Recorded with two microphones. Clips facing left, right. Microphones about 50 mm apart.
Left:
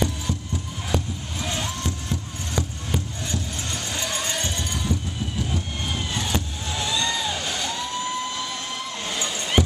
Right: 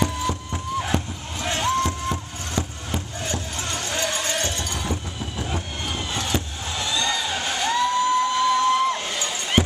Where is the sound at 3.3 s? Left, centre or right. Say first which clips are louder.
Right 3 dB; right.